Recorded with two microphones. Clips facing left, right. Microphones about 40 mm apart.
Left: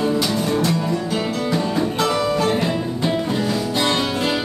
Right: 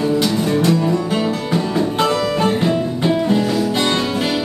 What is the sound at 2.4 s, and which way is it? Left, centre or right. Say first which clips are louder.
Music: right 2 dB; right.